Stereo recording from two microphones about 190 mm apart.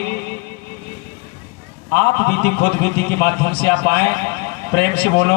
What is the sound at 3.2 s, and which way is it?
Speech, 60° left (ahead or behind).